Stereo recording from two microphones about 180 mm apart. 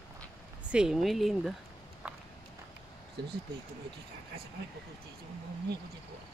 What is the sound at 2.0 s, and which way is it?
Walk, 5° right (ahead or behind).